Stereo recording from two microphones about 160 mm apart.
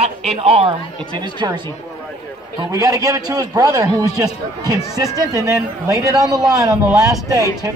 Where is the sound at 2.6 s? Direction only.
20° right (ahead or behind).